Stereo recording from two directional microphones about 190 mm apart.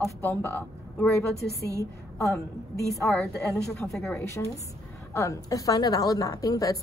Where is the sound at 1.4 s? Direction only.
55° left (ahead or behind).